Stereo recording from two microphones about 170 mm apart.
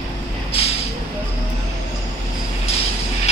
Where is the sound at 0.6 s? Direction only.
35° left (ahead or behind).